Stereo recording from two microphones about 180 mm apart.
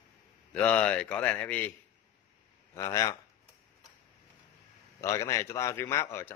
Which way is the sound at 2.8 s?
15° left (ahead or behind).